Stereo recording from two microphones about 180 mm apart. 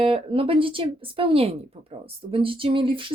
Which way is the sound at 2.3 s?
30° right (ahead or behind).